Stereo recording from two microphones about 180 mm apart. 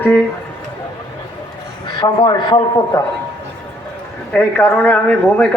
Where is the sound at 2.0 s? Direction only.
25° left (ahead or behind).